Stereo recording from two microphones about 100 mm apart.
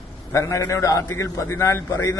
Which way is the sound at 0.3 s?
30° left (ahead or behind).